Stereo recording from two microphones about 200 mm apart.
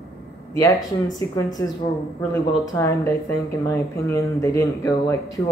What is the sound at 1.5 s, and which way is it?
Speech, 20° left (ahead or behind).